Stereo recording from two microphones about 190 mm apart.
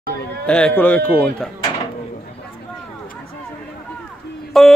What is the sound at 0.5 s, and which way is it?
Speech, 5° left (ahead or behind).